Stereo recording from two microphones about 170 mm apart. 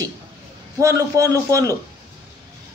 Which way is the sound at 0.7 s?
20° right (ahead or behind).